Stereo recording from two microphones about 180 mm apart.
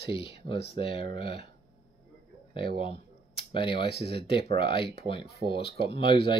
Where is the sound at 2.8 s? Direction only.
30° left (ahead or behind).